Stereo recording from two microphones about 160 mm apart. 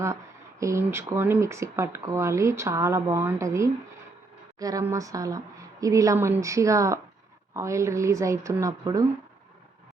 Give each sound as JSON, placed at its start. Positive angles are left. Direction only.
{"t": 0.6, "sound": "speech", "side_deg": -15}